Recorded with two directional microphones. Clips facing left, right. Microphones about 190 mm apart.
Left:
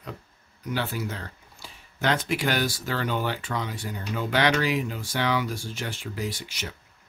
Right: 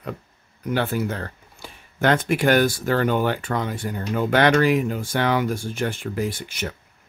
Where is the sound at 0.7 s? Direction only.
55° right (ahead or behind).